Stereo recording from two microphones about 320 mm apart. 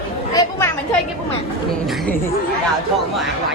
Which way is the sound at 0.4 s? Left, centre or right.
Centre.